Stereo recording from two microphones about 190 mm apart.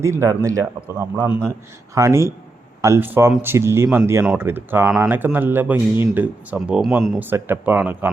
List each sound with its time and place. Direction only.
0.0 s speech: 15° right (ahead or behind)